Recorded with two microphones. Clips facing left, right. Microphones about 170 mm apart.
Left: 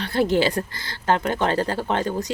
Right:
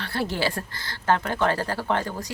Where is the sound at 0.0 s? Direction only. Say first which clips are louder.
Left 7 dB; 20° left (ahead or behind).